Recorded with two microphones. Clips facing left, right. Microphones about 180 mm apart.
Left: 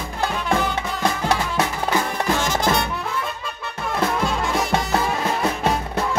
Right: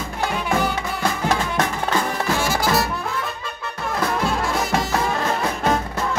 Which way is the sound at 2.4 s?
10° right (ahead or behind).